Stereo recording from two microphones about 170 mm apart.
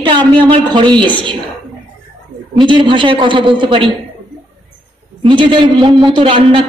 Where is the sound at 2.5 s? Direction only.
30° right (ahead or behind).